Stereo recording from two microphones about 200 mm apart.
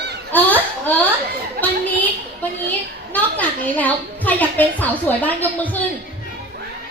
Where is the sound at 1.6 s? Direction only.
50° right (ahead or behind).